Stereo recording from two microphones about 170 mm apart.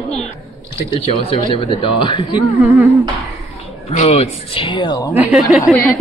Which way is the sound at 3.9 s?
40° left (ahead or behind).